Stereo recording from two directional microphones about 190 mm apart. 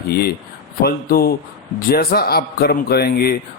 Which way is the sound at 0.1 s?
55° left (ahead or behind).